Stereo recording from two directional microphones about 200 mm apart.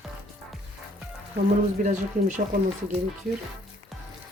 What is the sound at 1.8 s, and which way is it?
Speech, 35° right (ahead or behind).